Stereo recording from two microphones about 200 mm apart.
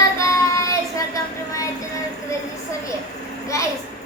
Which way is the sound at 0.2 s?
15° left (ahead or behind).